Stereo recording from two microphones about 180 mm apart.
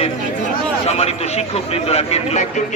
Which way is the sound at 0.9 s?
35° left (ahead or behind).